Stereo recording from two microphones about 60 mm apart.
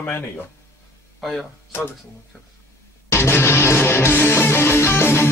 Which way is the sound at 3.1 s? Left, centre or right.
Left.